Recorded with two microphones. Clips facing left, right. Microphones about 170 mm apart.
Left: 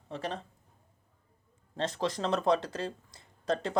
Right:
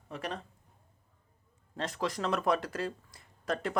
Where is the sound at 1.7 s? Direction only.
25° left (ahead or behind).